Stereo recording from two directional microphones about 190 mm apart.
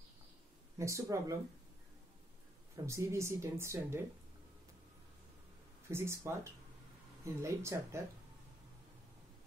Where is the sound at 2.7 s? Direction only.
15° right (ahead or behind).